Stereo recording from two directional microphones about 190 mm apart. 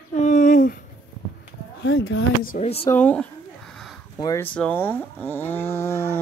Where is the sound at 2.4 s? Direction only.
35° left (ahead or behind).